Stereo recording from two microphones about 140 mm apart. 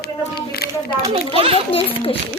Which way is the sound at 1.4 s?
45° right (ahead or behind).